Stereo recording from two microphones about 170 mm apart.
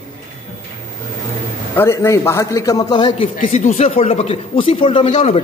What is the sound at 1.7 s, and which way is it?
A man's voice, 15° left (ahead or behind).